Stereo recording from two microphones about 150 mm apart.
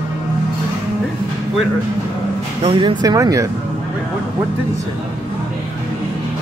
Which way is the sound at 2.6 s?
30° right (ahead or behind).